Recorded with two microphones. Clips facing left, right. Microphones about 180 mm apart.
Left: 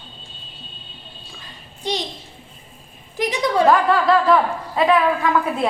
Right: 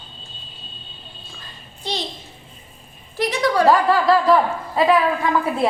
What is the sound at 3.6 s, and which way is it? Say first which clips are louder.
A woman's voice: even; 5° right (ahead or behind).